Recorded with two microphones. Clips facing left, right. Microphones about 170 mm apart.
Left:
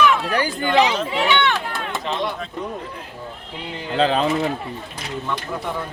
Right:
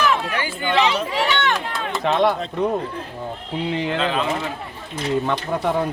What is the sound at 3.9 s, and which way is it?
Speech, 35° left (ahead or behind).